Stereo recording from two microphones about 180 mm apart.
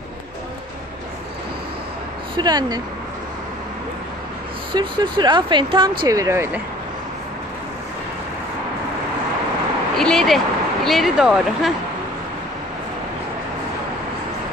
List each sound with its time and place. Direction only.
2.3 s speech: 20° right (ahead or behind)
4.7 s speech: 25° right (ahead or behind)
9.9 s speech: centre (ahead or behind)